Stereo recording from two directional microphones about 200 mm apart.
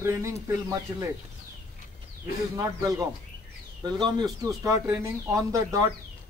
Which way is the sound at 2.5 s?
15° right (ahead or behind).